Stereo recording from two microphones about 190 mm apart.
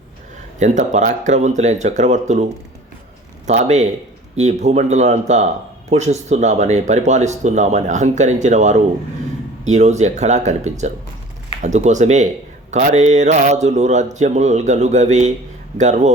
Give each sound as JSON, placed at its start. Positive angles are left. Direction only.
{"t": 0.6, "sound": "a man's voice", "side_deg": -40}